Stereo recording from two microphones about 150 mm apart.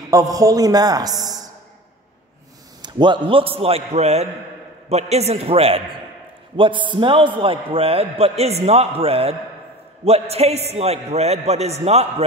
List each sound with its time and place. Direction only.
0.1 s a man's voice: 20° right (ahead or behind)
2.8 s a man's voice: 30° right (ahead or behind)